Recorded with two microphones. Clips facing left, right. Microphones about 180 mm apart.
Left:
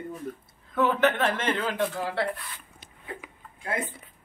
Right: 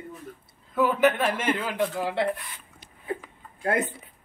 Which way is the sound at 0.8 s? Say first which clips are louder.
Right 1 dB; 10° right (ahead or behind).